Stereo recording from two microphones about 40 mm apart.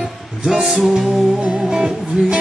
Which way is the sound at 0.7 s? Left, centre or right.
Centre.